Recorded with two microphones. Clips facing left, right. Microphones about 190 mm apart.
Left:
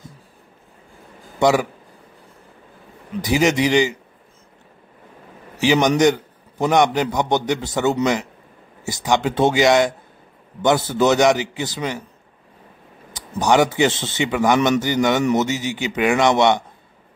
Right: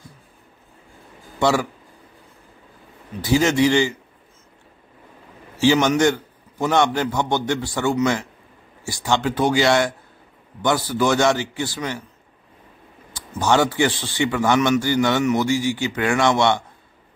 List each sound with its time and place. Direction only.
1.4 s a man's voice: 15° left (ahead or behind)
3.2 s a man's voice: 15° left (ahead or behind)
5.6 s a man's voice: 15° left (ahead or behind)
13.1 s a man's voice: 15° left (ahead or behind)